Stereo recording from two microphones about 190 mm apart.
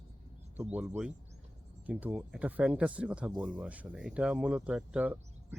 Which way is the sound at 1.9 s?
5° right (ahead or behind).